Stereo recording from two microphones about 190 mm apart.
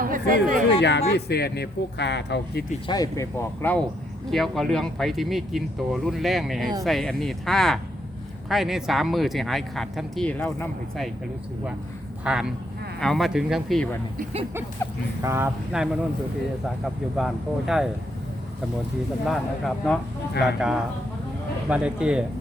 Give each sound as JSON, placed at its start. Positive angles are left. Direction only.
{"t": 0.0, "sound": "speech", "side_deg": -45}
{"t": 0.8, "sound": "speech", "side_deg": 65}
{"t": 2.8, "sound": "speech", "side_deg": 20}
{"t": 12.2, "sound": "speech", "side_deg": -5}
{"t": 15.2, "sound": "speech", "side_deg": -15}
{"t": 19.2, "sound": "speech", "side_deg": 0}